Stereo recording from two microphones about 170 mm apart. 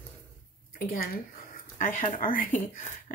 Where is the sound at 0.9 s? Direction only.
55° left (ahead or behind).